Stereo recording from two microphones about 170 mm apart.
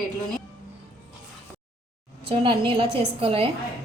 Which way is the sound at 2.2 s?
30° right (ahead or behind).